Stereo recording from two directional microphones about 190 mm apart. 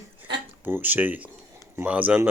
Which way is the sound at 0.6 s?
10° right (ahead or behind).